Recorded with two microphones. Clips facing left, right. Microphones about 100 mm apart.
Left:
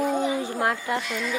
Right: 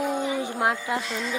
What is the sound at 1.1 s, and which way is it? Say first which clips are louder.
Speech: left 1 dB; 30° right (ahead or behind).